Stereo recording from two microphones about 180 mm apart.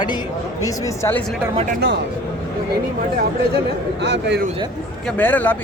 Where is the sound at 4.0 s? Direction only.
70° right (ahead or behind).